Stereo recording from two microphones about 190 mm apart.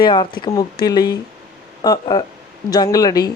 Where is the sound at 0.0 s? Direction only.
25° left (ahead or behind).